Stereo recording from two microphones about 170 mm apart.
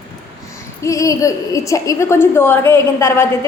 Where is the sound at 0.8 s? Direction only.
20° left (ahead or behind).